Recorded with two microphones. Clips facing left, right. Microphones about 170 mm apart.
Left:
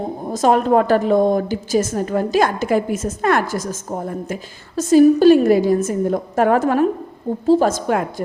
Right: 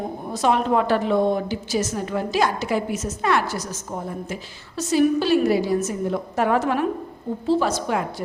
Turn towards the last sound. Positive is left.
turn(degrees=50)  # may be behind; listen again after turning